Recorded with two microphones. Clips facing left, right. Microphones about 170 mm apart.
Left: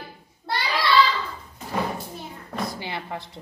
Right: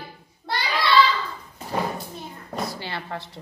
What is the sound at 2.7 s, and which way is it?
Speech, 20° left (ahead or behind).